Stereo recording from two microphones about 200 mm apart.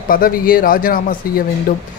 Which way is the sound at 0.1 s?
45° left (ahead or behind).